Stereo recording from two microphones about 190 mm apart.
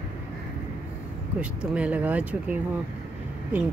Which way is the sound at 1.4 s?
5° right (ahead or behind).